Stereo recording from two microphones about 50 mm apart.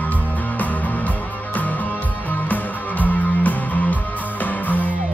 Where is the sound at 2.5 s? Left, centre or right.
Left.